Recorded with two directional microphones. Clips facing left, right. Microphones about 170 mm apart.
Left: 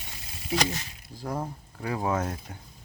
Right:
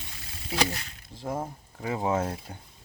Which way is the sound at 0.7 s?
25° right (ahead or behind).